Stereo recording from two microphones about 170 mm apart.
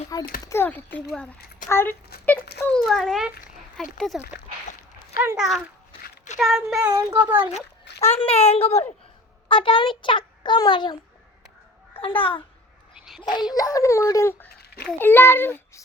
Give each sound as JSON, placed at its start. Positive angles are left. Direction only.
{"t": 0.1, "sound": "a child's voice", "side_deg": 20}
{"t": 5.4, "sound": "a child's voice", "side_deg": 0}
{"t": 6.7, "sound": "speech", "side_deg": -15}
{"t": 7.3, "sound": "speech", "side_deg": -30}
{"t": 8.1, "sound": "speech", "side_deg": 35}
{"t": 11.9, "sound": "a child's voice", "side_deg": 30}
{"t": 13.1, "sound": "a sound", "side_deg": 0}
{"t": 13.5, "sound": "a child's voice", "side_deg": 20}